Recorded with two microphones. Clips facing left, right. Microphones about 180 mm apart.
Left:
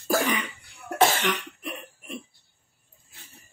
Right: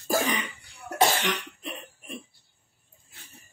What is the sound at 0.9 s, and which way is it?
Cough, 40° right (ahead or behind).